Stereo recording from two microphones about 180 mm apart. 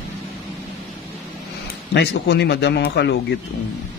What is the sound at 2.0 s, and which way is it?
Speech, 70° left (ahead or behind).